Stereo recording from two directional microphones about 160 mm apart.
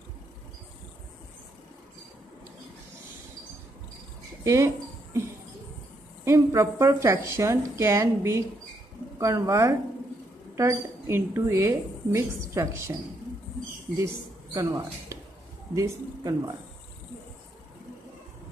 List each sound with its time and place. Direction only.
4.5 s a sound: 20° right (ahead or behind)
6.2 s a woman's voice: 20° right (ahead or behind)
13.9 s speech: 20° right (ahead or behind)